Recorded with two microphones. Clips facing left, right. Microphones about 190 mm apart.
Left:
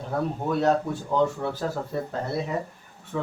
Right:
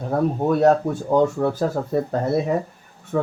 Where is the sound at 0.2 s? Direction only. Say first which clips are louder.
Right 7 dB; 50° right (ahead or behind).